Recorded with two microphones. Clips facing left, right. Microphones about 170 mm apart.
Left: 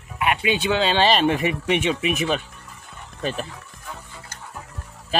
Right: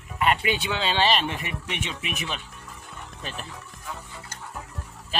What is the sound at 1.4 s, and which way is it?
Speech, 65° left (ahead or behind).